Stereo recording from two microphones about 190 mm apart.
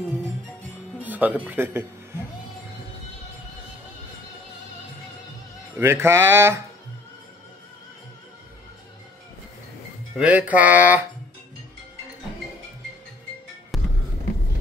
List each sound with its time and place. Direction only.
1.0 s speech: 10° right (ahead or behind)
5.8 s music: 15° right (ahead or behind)
10.1 s music: 5° right (ahead or behind)